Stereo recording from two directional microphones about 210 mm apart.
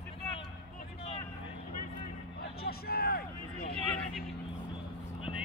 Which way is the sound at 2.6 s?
45° left (ahead or behind).